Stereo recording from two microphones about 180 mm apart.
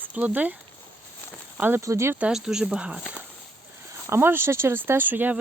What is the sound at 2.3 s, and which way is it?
Speech, 5° right (ahead or behind).